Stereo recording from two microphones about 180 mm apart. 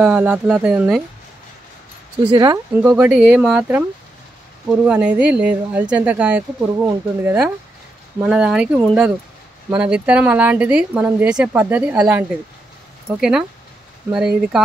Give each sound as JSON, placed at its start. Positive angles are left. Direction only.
{"t": 0.0, "sound": "speech", "side_deg": -5}
{"t": 2.2, "sound": "speech", "side_deg": -25}
{"t": 2.7, "sound": "speech", "side_deg": -10}